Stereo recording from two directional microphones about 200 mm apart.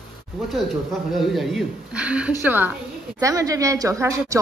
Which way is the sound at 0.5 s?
Centre (ahead or behind).